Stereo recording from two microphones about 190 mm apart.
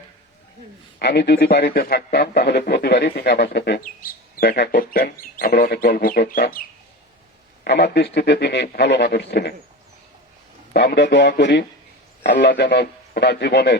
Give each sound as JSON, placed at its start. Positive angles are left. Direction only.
{"t": 0.9, "sound": "speech", "side_deg": 60}
{"t": 7.6, "sound": "speech", "side_deg": 65}
{"t": 10.8, "sound": "speech", "side_deg": 65}